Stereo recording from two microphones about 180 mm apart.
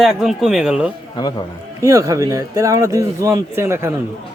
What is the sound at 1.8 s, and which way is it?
Speech, 20° right (ahead or behind).